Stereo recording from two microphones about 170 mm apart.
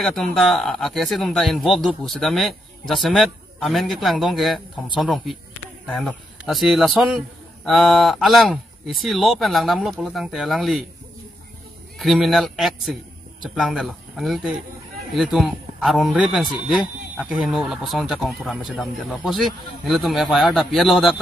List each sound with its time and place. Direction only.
0.0 s speech: 5° left (ahead or behind)
12.0 s speech: centre (ahead or behind)